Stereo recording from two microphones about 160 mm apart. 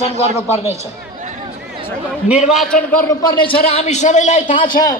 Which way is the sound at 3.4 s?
35° left (ahead or behind).